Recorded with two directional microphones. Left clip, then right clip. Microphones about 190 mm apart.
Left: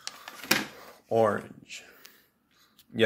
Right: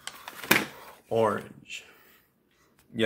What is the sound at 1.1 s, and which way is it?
Speech, 20° left (ahead or behind).